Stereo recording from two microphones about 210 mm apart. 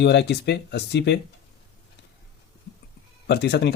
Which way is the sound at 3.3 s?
55° left (ahead or behind).